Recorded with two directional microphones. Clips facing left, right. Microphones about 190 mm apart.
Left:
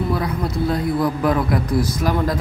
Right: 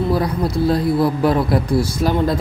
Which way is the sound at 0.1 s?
35° right (ahead or behind).